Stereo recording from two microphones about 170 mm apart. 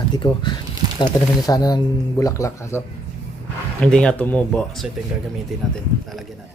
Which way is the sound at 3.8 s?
5° left (ahead or behind).